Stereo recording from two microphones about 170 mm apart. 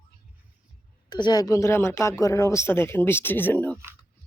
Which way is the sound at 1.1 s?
25° left (ahead or behind).